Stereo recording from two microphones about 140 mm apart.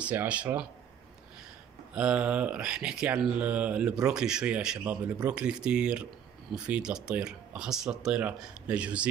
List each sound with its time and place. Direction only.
0.0 s speech: 10° right (ahead or behind)
2.0 s speech: 10° right (ahead or behind)